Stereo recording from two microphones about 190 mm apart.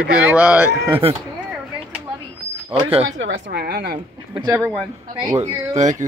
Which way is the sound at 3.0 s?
85° right.